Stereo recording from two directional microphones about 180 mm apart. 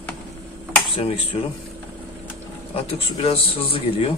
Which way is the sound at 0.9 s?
30° left (ahead or behind).